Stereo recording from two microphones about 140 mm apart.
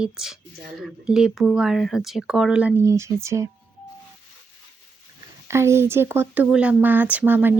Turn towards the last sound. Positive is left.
turn(degrees=-15)  # may be behind; listen again after turning